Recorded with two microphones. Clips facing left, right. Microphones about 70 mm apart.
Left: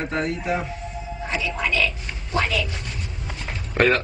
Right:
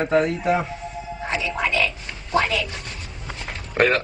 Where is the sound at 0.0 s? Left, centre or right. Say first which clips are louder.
Right 6 dB; right.